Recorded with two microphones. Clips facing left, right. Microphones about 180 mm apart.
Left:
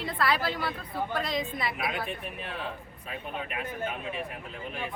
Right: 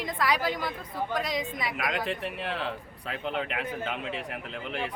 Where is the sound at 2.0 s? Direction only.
85° right.